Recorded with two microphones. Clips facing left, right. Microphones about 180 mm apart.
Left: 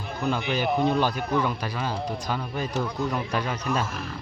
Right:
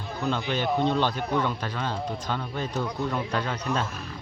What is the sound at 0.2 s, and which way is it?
Speech, 10° left (ahead or behind).